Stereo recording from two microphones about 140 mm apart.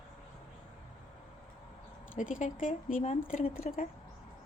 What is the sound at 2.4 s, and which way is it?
Speech, 70° left (ahead or behind).